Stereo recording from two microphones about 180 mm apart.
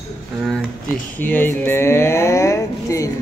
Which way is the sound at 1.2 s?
10° left (ahead or behind).